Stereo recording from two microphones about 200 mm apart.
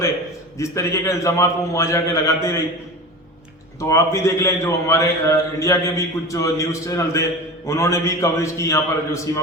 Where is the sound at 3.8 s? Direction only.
15° left (ahead or behind).